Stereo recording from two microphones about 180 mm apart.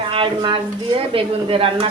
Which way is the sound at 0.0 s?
30° right (ahead or behind).